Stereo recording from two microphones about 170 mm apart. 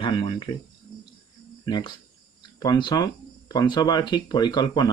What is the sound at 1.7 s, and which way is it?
Speech, 25° left (ahead or behind).